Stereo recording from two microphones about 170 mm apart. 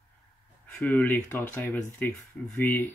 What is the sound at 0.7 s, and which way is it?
Speech, 10° left (ahead or behind).